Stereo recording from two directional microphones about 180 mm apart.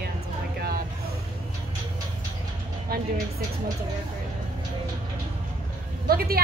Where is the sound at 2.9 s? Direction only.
50° right (ahead or behind).